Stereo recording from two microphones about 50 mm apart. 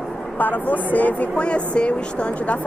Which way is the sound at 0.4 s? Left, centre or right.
Left.